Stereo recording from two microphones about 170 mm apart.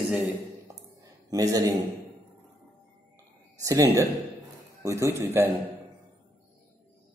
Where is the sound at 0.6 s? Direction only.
20° right (ahead or behind).